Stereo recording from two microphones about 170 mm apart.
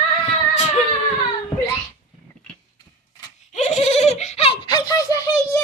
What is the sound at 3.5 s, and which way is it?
Goat, 40° left (ahead or behind).